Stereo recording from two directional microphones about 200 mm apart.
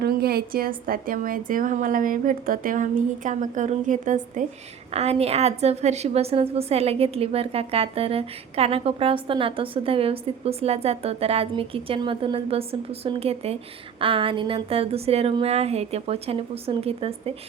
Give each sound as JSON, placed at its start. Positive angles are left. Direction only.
{"t": 0.0, "sound": "a woman's voice", "side_deg": -50}